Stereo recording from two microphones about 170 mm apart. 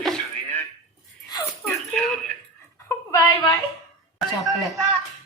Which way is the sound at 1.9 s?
5° left (ahead or behind).